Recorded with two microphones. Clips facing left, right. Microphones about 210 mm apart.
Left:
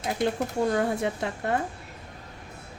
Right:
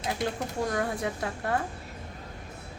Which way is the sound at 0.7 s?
25° left (ahead or behind).